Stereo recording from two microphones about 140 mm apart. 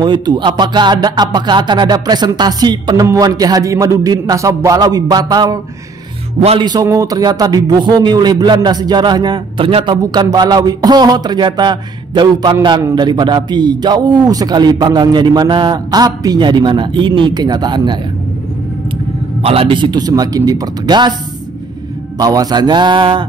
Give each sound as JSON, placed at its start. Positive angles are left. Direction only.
{"t": 0.0, "sound": "music", "side_deg": -30}
{"t": 6.6, "sound": "music", "side_deg": -30}
{"t": 10.1, "sound": "a man's voice", "side_deg": -30}
{"t": 19.4, "sound": "a man's voice", "side_deg": -40}
{"t": 22.2, "sound": "a man's voice", "side_deg": -25}